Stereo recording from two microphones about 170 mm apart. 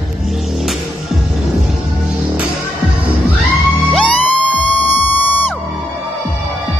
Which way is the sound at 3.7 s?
10° left (ahead or behind).